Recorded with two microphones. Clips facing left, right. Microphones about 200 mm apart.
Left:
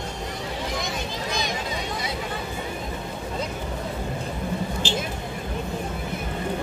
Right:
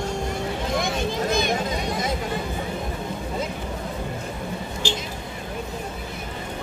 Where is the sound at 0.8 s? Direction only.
55° right (ahead or behind).